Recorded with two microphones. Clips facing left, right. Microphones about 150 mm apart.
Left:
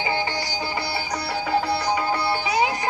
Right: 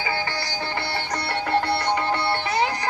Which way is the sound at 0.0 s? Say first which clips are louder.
Left 2 dB; 15° left (ahead or behind).